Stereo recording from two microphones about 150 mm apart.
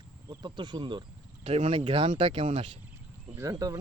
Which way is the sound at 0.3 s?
30° right (ahead or behind).